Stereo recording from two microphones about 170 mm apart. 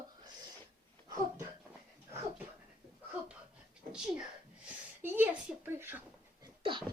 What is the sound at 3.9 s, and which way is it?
Speech, 5° right (ahead or behind).